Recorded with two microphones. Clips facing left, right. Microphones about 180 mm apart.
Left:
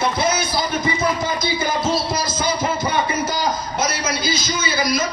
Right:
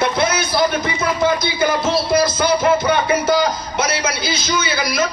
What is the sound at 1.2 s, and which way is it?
Music, 60° right (ahead or behind).